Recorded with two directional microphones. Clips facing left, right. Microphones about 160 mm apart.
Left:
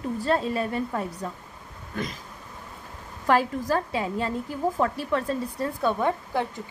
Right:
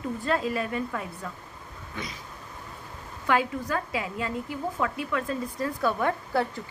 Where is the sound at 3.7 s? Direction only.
30° left (ahead or behind).